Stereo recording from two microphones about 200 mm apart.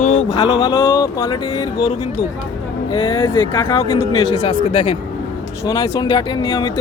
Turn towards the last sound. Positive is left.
turn(degrees=25)  # may be behind; listen again after turning